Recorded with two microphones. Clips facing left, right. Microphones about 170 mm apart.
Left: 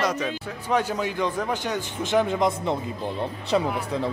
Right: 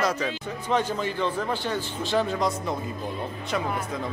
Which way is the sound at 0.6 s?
10° left (ahead or behind).